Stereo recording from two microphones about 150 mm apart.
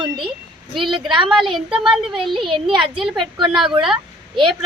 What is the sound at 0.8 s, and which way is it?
Speech, 35° right (ahead or behind).